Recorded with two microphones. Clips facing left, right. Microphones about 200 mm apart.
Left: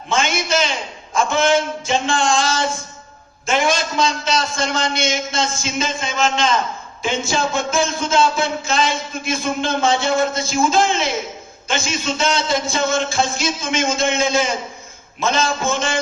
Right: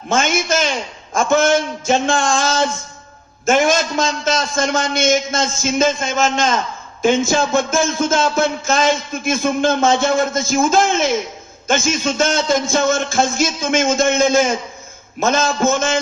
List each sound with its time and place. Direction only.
0.1 s a man's voice: 45° right (ahead or behind)